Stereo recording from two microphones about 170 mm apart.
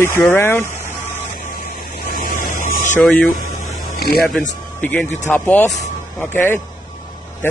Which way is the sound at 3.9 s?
65° left (ahead or behind).